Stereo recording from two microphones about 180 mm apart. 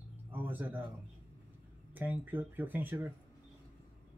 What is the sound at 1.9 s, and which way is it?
Speech, 10° right (ahead or behind).